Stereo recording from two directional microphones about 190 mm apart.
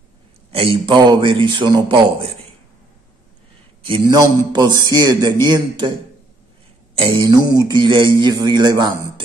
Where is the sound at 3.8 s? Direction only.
25° right (ahead or behind).